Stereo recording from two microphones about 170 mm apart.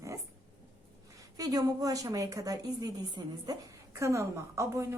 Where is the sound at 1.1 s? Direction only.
20° right (ahead or behind).